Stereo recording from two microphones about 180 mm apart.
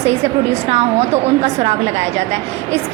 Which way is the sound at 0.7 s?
35° right (ahead or behind).